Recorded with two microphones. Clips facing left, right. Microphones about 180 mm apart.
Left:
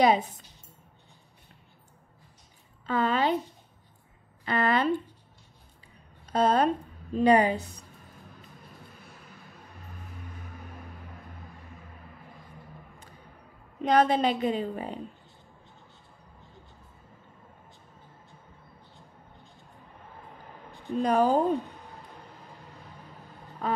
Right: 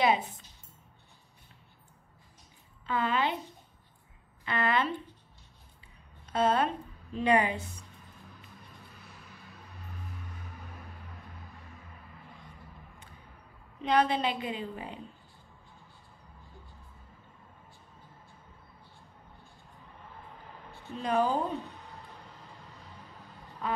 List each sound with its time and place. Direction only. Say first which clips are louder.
0.0 s a woman's voice: left 5 dB; 40° left (ahead or behind)
2.9 s a woman's voice: left 4 dB; 40° left (ahead or behind)
4.5 s a woman's voice: left 4 dB; 40° left (ahead or behind)
6.3 s a woman's voice: left 4 dB; 40° left (ahead or behind)
13.7 s a woman's voice: left 4 dB; 45° left (ahead or behind)
21.0 s a woman's voice: left 5 dB; 45° left (ahead or behind)